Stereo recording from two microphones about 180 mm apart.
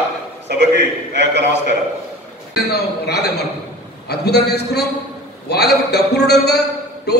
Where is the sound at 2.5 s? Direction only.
65° left (ahead or behind).